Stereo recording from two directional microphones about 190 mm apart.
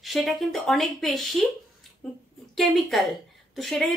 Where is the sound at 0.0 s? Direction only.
Centre (ahead or behind).